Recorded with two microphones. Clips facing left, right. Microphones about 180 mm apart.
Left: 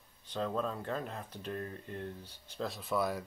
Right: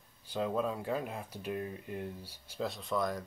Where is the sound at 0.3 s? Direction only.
10° right (ahead or behind).